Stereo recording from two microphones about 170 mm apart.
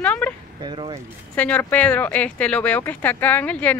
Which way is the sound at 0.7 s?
30° right (ahead or behind).